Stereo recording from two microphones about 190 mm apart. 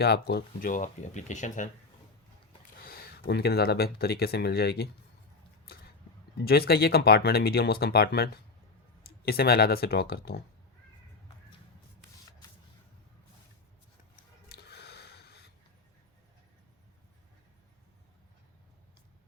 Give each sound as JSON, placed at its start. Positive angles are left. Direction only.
{"t": 0.0, "sound": "speech", "side_deg": 60}
{"t": 2.8, "sound": "speech", "side_deg": 50}
{"t": 6.3, "sound": "speech", "side_deg": 55}
{"t": 14.5, "sound": "a sound", "side_deg": 60}